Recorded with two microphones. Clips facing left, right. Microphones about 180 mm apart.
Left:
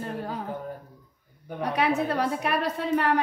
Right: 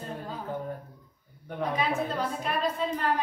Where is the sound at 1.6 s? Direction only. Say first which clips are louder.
Left 3 dB; 70° left (ahead or behind).